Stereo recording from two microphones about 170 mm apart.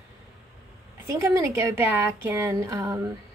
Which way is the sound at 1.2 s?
15° right (ahead or behind).